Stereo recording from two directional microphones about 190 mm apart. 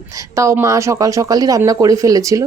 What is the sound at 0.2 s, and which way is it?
Speech, 15° right (ahead or behind).